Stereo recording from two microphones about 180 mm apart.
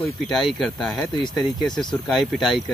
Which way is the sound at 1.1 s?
25° left (ahead or behind).